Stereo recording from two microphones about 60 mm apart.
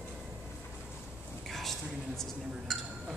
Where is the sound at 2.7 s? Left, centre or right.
Centre.